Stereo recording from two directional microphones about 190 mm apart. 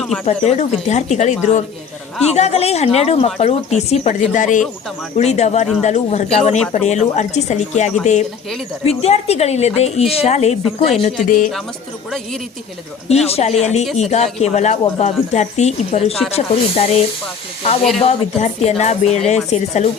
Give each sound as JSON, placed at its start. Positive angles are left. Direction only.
{"t": 0.3, "sound": "speech", "side_deg": 35}
{"t": 13.1, "sound": "speech", "side_deg": 35}
{"t": 18.0, "sound": "speech", "side_deg": 35}